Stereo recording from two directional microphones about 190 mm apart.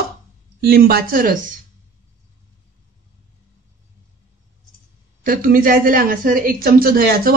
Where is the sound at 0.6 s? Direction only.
55° right (ahead or behind).